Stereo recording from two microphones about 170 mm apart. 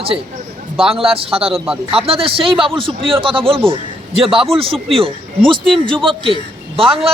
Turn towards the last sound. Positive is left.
turn(degrees=-30)  # may be behind; listen again after turning